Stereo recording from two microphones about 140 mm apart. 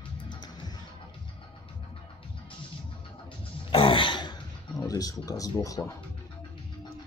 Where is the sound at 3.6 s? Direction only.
35° left (ahead or behind).